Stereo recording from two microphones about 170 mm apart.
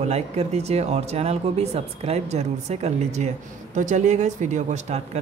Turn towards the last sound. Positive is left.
turn(degrees=-40)  # may be behind; listen again after turning